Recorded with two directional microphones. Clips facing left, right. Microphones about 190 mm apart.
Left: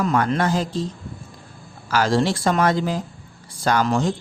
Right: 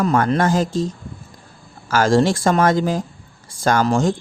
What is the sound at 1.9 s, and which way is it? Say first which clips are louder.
A woman's voice: right 4 dB; 45° right (ahead or behind).